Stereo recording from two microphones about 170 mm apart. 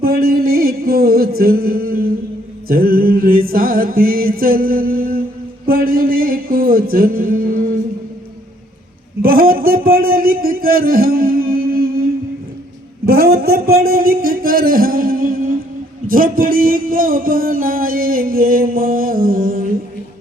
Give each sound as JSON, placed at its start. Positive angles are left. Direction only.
{"t": 0.0, "sound": "music", "side_deg": -60}
{"t": 9.2, "sound": "a sound", "side_deg": -60}
{"t": 13.1, "sound": "music", "side_deg": -60}